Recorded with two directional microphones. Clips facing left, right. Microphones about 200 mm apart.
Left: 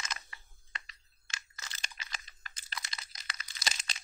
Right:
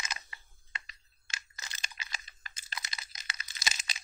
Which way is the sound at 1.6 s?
15° right (ahead or behind).